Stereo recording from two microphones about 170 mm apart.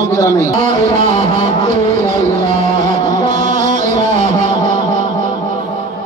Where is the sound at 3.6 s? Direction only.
45° right (ahead or behind).